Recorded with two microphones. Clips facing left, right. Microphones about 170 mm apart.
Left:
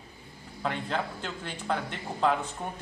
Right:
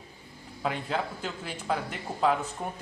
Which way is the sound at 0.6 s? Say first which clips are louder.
Right 1 dB; 5° right (ahead or behind).